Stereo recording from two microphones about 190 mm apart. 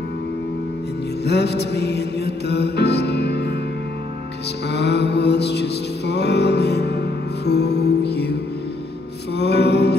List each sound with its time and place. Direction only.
1.2 s music: 60° left (ahead or behind)
4.6 s music: 60° left (ahead or behind)
9.4 s music: 60° left (ahead or behind)